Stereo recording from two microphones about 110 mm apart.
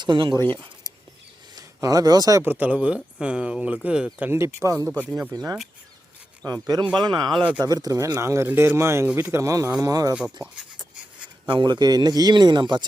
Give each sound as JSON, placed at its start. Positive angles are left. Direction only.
{"t": 0.0, "sound": "speech", "side_deg": -45}
{"t": 0.5, "sound": "keys jangling", "side_deg": -45}
{"t": 1.5, "sound": "speech", "side_deg": -30}
{"t": 2.4, "sound": "speech", "side_deg": -15}
{"t": 4.3, "sound": "speech", "side_deg": -25}
{"t": 4.9, "sound": "speech", "side_deg": -15}
{"t": 5.3, "sound": "speech", "side_deg": -30}
{"t": 9.0, "sound": "speech", "side_deg": -10}
{"t": 9.3, "sound": "speech", "side_deg": -30}
{"t": 11.4, "sound": "speech", "side_deg": -45}